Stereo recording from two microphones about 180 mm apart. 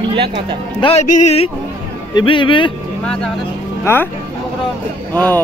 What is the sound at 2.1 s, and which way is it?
Speech, 25° left (ahead or behind).